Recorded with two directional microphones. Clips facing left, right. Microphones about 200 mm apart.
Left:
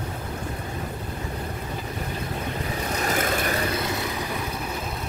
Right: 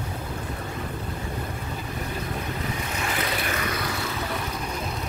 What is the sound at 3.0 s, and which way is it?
Vehicle, 45° left (ahead or behind).